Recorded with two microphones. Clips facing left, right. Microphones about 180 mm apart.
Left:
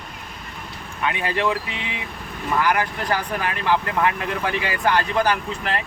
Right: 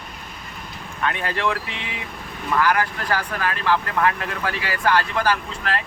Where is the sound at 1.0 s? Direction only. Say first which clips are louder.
Left 1 dB; 15° left (ahead or behind).